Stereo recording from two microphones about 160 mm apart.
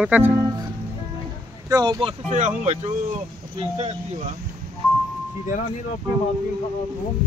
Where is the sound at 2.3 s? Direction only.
50° right (ahead or behind).